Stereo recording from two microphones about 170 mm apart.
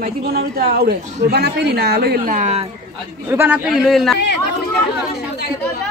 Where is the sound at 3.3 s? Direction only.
15° right (ahead or behind).